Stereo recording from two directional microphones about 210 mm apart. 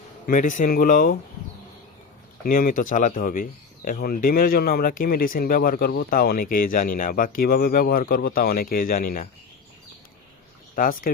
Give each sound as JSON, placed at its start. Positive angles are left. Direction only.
{"t": 0.3, "sound": "speech", "side_deg": 40}
{"t": 2.4, "sound": "speech", "side_deg": 45}
{"t": 10.8, "sound": "speech", "side_deg": 40}